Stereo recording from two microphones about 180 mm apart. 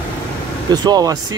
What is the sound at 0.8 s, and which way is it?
Speech, 20° right (ahead or behind).